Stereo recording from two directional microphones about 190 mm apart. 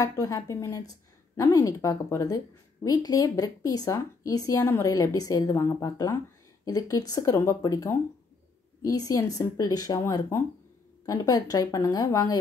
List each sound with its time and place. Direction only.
0.0 s a woman's voice: 15° left (ahead or behind)